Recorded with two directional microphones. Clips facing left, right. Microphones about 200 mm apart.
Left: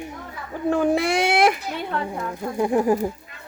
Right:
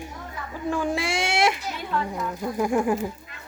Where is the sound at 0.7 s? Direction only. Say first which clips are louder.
Left 6 dB; 60° left (ahead or behind).